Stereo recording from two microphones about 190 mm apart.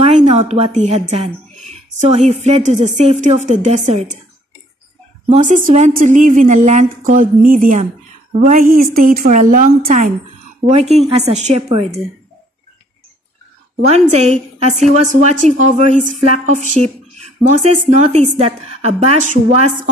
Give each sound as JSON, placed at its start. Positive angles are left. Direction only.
{"t": 0.0, "sound": "a woman's voice", "side_deg": -35}
{"t": 5.3, "sound": "a woman's voice", "side_deg": -40}
{"t": 10.6, "sound": "speech", "side_deg": -30}
{"t": 13.7, "sound": "a woman's voice", "side_deg": -35}